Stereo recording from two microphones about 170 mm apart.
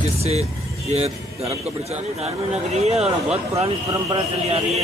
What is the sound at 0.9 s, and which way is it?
Speech, 40° right (ahead or behind).